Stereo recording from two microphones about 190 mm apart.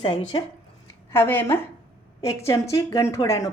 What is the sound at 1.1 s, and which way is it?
A woman's voice, 10° left (ahead or behind).